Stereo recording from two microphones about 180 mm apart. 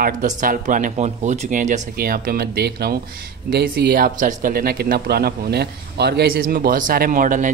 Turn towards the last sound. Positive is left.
turn(degrees=-45)  # may be behind; listen again after turning